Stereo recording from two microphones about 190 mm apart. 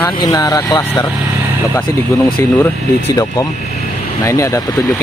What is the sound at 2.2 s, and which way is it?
Speech, 5° left (ahead or behind).